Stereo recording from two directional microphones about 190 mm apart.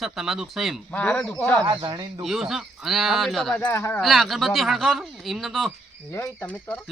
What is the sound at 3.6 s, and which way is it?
Speech, 15° left (ahead or behind).